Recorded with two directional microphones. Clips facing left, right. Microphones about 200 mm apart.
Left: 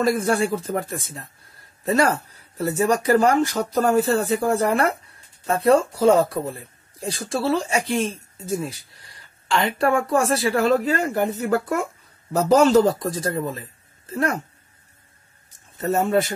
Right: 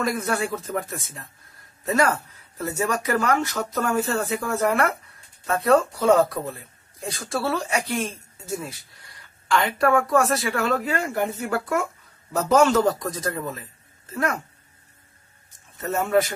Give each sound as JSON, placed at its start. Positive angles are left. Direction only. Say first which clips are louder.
{"t": 0.0, "sound": "speech", "louder": "left 5 dB", "side_deg": 30}
{"t": 2.9, "sound": "speech", "louder": "left 6 dB", "side_deg": 30}
{"t": 15.8, "sound": "speech", "louder": "left 2 dB", "side_deg": 30}